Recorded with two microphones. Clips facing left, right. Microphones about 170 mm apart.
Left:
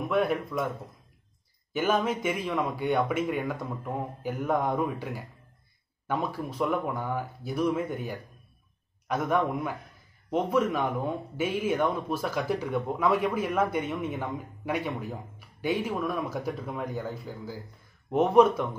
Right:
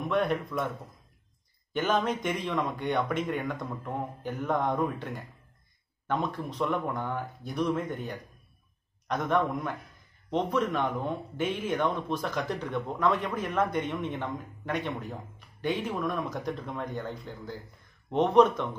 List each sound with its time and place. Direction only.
0.1 s a man's voice: 5° left (ahead or behind)
1.7 s a man's voice: 10° left (ahead or behind)